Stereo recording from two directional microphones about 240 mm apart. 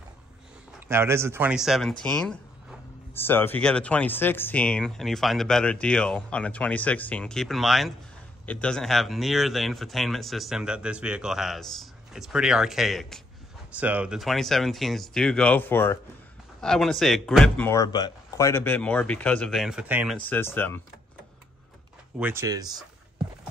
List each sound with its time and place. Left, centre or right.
0.7 s speech: centre
17.6 s speech: centre
20.2 s speech: centre
22.2 s speech: centre